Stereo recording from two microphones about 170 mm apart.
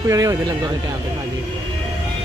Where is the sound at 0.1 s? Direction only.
20° right (ahead or behind).